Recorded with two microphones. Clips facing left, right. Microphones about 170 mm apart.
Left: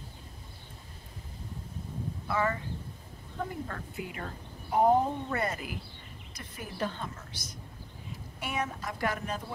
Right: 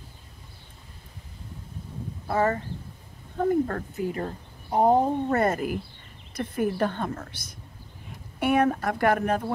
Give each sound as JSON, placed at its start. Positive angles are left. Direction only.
{"t": 2.2, "sound": "speech", "side_deg": -40}
{"t": 5.4, "sound": "a woman's voice", "side_deg": -50}